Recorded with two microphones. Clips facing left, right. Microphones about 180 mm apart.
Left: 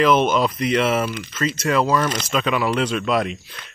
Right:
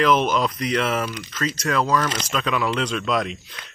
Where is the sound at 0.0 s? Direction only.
5° left (ahead or behind).